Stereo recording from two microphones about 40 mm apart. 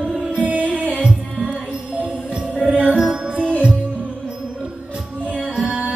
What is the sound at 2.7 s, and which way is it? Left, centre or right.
Music, right.